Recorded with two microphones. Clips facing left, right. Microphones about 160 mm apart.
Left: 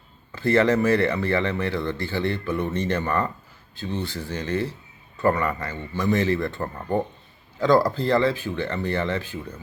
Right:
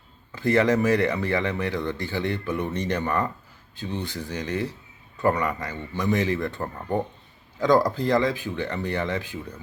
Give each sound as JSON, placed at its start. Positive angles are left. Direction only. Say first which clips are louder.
{"t": 0.3, "sound": "speech", "louder": "left 1 dB", "side_deg": -15}
{"t": 6.7, "sound": "speech", "louder": "left 2 dB", "side_deg": 0}
{"t": 7.6, "sound": "speech", "louder": "left 1 dB", "side_deg": -15}